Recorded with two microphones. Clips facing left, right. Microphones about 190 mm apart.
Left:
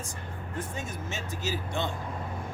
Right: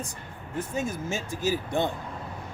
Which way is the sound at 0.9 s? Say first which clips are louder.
Right 5 dB; 10° right (ahead or behind).